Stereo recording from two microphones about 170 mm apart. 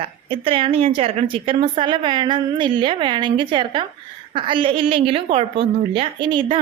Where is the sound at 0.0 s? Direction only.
30° right (ahead or behind).